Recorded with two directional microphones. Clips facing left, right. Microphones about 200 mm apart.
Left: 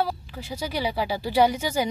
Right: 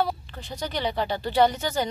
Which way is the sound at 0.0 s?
5° left (ahead or behind).